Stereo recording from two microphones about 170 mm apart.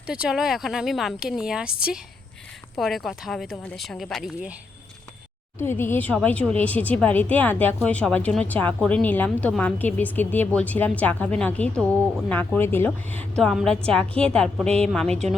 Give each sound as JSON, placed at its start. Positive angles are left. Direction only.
{"t": 0.1, "sound": "a woman's voice", "side_deg": -5}
{"t": 5.5, "sound": "a woman's voice", "side_deg": 15}